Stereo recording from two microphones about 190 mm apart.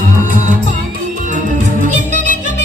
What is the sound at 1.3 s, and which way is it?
Music, 40° right (ahead or behind).